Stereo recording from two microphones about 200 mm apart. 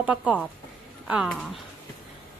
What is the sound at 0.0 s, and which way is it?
Speech, 5° right (ahead or behind).